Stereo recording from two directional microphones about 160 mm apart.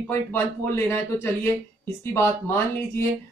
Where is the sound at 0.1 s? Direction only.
15° left (ahead or behind).